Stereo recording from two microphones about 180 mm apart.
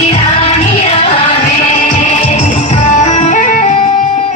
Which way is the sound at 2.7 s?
40° left (ahead or behind).